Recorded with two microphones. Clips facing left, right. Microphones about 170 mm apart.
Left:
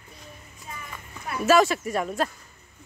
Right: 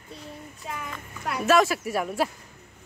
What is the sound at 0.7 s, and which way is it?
Clip-clop, 75° right (ahead or behind).